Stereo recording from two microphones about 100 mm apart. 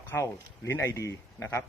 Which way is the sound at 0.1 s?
25° left (ahead or behind).